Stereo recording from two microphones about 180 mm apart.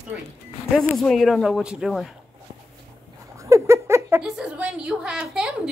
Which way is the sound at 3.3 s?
15° right (ahead or behind).